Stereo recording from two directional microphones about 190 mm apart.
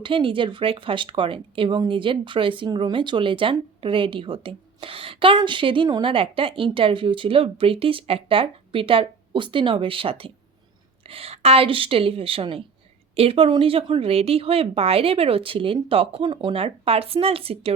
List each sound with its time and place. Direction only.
0.0 s speech: 25° right (ahead or behind)